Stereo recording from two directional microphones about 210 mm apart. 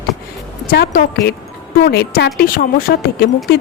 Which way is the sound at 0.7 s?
45° left (ahead or behind).